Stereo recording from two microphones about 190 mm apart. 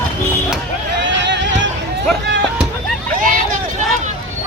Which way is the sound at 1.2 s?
70° right (ahead or behind).